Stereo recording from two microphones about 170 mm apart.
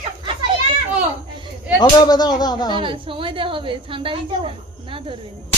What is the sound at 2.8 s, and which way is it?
A woman's voice, 30° right (ahead or behind).